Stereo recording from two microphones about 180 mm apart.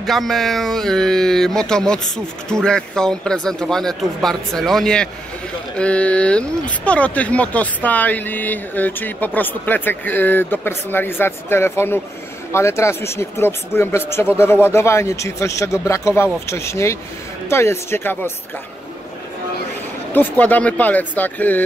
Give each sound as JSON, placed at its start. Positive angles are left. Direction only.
{"t": 0.0, "sound": "speech", "side_deg": 0}
{"t": 20.2, "sound": "speech", "side_deg": 10}